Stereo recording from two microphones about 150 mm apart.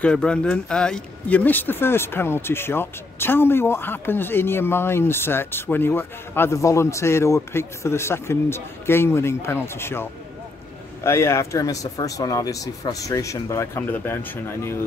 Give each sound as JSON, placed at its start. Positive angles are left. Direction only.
{"t": 0.0, "sound": "speech", "side_deg": 5}
{"t": 11.1, "sound": "speech", "side_deg": 15}